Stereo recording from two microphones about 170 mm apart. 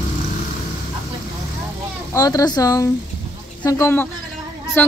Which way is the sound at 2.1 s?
20° left (ahead or behind).